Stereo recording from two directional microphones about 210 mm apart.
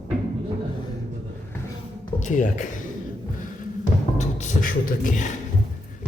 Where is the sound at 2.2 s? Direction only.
35° left (ahead or behind).